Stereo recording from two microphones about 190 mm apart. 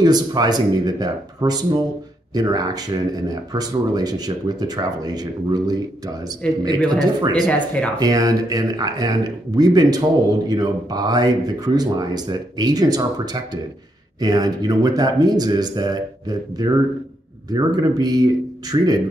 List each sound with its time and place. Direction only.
0.0 s speech: 20° right (ahead or behind)
7.4 s speech: 5° left (ahead or behind)
8.0 s speech: 20° right (ahead or behind)
17.7 s speech: 20° right (ahead or behind)